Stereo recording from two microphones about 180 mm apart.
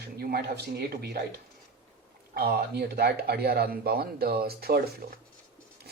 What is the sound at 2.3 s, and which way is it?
Speech, 60° right (ahead or behind).